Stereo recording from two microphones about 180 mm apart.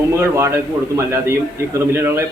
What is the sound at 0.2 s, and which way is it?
A man's voice, 15° right (ahead or behind).